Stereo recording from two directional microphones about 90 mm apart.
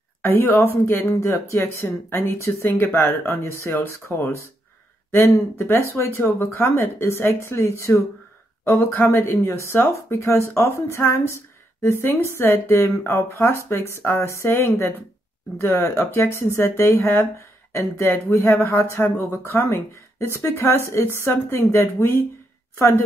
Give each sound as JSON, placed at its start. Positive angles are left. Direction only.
{"t": 0.2, "sound": "speech", "side_deg": 25}